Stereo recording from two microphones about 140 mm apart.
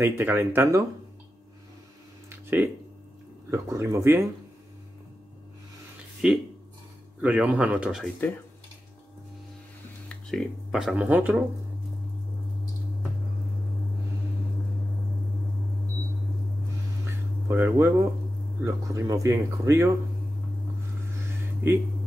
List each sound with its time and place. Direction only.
0.0 s speech: 15° right (ahead or behind)
2.2 s a sound: 15° right (ahead or behind)
3.4 s speech: 20° right (ahead or behind)
6.2 s speech: 5° right (ahead or behind)
10.0 s speech: 5° left (ahead or behind); by 11.4 s 10° right (ahead or behind)
17.0 s a sound: 15° right (ahead or behind)
18.6 s speech: 20° right (ahead or behind)